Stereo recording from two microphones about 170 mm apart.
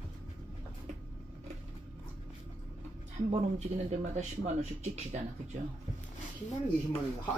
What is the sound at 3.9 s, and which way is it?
Speech, 40° right (ahead or behind).